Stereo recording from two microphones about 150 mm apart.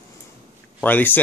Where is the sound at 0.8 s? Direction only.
10° left (ahead or behind).